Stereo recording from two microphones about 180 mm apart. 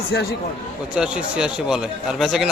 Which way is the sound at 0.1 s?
65° left (ahead or behind).